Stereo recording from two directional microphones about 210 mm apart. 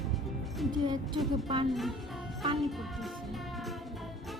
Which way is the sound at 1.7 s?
Centre (ahead or behind).